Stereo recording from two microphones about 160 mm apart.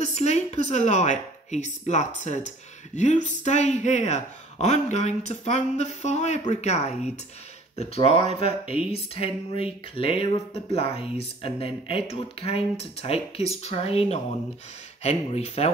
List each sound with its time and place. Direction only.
0.0 s speech: 45° left (ahead or behind)